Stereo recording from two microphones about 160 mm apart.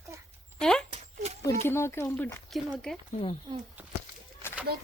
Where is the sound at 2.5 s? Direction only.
Centre (ahead or behind).